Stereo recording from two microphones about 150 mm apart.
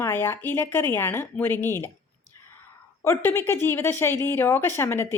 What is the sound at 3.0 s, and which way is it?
A woman's voice, 15° left (ahead or behind).